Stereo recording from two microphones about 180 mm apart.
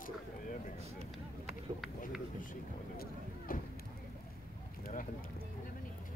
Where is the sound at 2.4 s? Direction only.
50° left (ahead or behind).